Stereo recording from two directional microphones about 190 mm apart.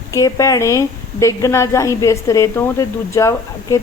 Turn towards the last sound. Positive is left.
turn(degrees=15)  # may be behind; listen again after turning